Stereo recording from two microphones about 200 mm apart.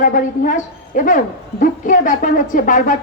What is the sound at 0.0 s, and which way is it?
A woman's voice, 40° left (ahead or behind).